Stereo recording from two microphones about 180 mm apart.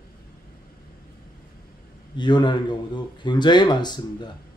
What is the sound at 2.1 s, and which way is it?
Speech, 25° left (ahead or behind).